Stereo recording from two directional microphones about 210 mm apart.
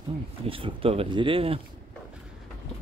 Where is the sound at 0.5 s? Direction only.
25° right (ahead or behind).